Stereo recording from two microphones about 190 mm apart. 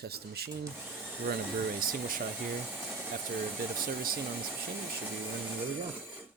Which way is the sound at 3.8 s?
50° right (ahead or behind).